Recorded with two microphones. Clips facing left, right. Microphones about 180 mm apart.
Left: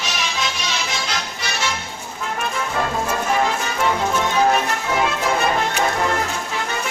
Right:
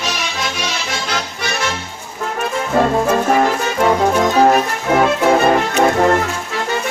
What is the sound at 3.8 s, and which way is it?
Music, 45° right (ahead or behind).